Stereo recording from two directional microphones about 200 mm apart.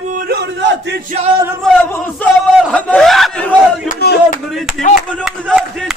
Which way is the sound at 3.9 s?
50° left (ahead or behind).